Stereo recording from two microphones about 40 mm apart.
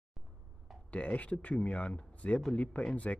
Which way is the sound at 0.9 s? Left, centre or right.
Left.